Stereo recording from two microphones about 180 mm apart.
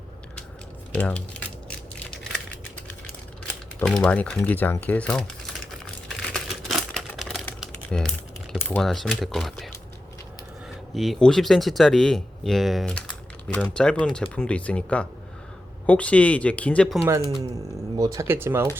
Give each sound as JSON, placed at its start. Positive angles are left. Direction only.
{"t": 0.9, "sound": "speech", "side_deg": 5}
{"t": 3.8, "sound": "speech", "side_deg": 5}
{"t": 6.3, "sound": "typewriter", "side_deg": 0}
{"t": 8.5, "sound": "speech", "side_deg": 5}
{"t": 10.9, "sound": "speech", "side_deg": 0}
{"t": 17.1, "sound": "speech", "side_deg": -20}